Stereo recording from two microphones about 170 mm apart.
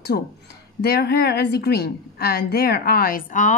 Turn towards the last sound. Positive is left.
turn(degrees=50)  # may be behind; listen again after turning